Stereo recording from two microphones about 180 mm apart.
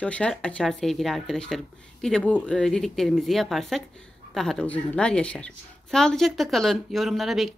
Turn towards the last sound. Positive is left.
turn(degrees=0)  # may be behind; listen again after turning